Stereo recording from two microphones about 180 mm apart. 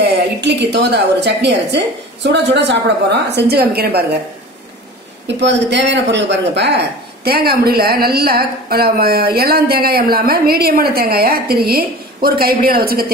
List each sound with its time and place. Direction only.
0.0 s a woman's voice: 70° right (ahead or behind)
5.2 s a woman's voice: 75° right (ahead or behind)
7.2 s a woman's voice: 60° right (ahead or behind)